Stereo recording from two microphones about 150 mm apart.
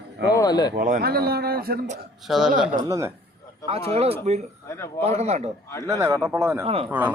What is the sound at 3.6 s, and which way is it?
Speech, 40° right (ahead or behind).